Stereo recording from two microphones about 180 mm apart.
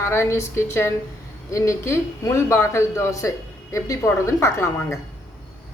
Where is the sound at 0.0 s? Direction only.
15° left (ahead or behind).